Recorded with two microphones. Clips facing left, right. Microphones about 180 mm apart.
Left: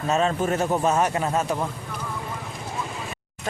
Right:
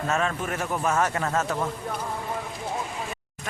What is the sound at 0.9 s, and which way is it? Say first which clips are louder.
Speech: left 2 dB; 20° left (ahead or behind).